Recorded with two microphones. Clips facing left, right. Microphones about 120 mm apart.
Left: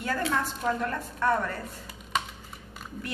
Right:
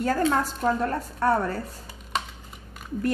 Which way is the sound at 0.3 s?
40° right (ahead or behind).